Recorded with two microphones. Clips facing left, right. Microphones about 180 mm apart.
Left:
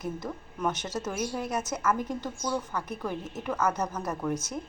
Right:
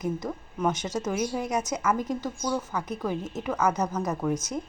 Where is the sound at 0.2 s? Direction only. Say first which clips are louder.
Right 3 dB; 10° right (ahead or behind).